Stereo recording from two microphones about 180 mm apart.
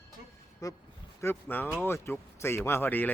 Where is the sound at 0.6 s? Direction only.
20° left (ahead or behind).